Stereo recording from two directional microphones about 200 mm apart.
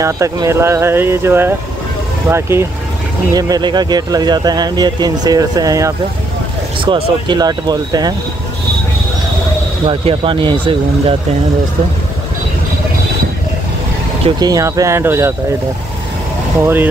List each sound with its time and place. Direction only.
0.0 s speech: 15° right (ahead or behind)
9.8 s speech: 25° right (ahead or behind)
14.2 s speech: 20° right (ahead or behind)
16.5 s speech: 10° right (ahead or behind)